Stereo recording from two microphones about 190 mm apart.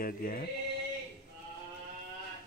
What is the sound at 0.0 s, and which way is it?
Speech, 50° left (ahead or behind).